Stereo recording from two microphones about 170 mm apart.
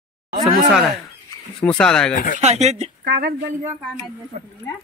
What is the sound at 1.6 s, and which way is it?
Speech, 5° left (ahead or behind).